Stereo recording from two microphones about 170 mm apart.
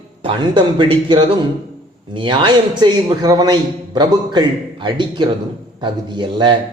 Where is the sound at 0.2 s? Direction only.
30° right (ahead or behind).